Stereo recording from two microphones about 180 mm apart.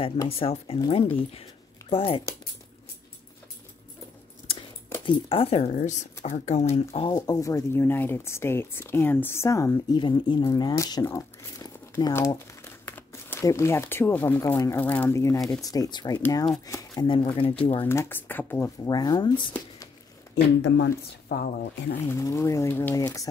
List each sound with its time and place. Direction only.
0.3 s speech: 35° left (ahead or behind)
5.0 s speech: 30° left (ahead or behind)
17.8 s speech: 10° left (ahead or behind)
20.6 s speech: 80° left
22.0 s speech: 15° left (ahead or behind)